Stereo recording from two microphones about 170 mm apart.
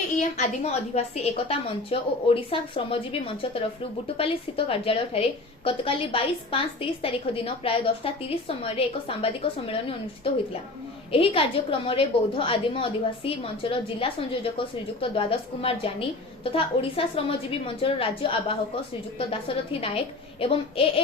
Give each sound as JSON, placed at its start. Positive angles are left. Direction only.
{"t": 0.2, "sound": "a woman's voice", "side_deg": 40}
{"t": 11.1, "sound": "a woman's voice", "side_deg": 35}